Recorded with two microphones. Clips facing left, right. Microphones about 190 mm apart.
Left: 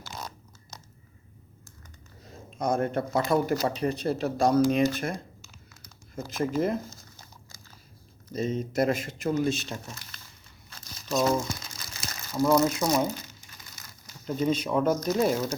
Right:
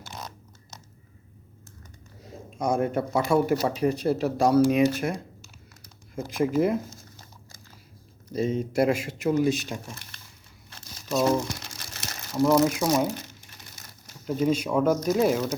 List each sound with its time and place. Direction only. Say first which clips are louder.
2.5 s speech: right 2 dB; 10° right (ahead or behind)
6.1 s speech: right 4 dB; 10° right (ahead or behind)
8.3 s speech: right 3 dB; 10° right (ahead or behind)
11.1 s speech: right 2 dB; 10° right (ahead or behind)
11.4 s crumpling: right 1 dB; 70° right (ahead or behind)
12.4 s speech: right 2 dB; 10° right (ahead or behind)
14.3 s speech: right 2 dB; 5° right (ahead or behind)